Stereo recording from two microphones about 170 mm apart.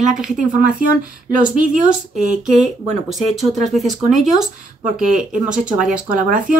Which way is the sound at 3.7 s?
Centre (ahead or behind).